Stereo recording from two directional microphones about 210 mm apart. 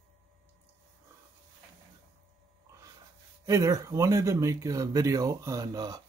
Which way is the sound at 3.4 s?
15° right (ahead or behind).